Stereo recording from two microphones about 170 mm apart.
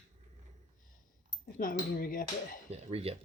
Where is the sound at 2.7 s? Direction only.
35° right (ahead or behind).